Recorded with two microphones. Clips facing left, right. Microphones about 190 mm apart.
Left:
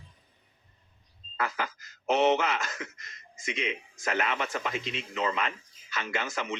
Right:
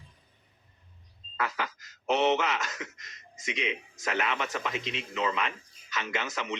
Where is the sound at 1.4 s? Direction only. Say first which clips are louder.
Left 1 dB; 50° left (ahead or behind).